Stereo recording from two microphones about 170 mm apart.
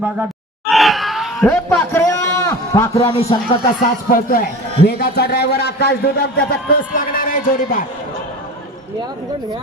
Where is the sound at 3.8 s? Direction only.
55° left (ahead or behind).